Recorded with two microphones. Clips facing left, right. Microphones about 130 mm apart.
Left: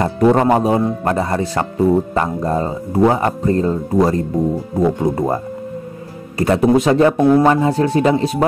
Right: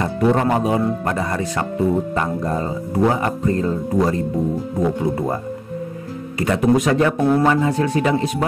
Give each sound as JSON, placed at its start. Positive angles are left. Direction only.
{"t": 0.0, "sound": "speech", "side_deg": 40}